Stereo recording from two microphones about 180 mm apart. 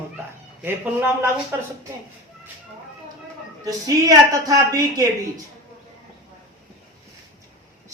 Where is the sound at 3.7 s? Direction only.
20° right (ahead or behind).